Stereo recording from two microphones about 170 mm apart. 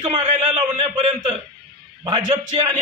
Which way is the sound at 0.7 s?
40° right (ahead or behind).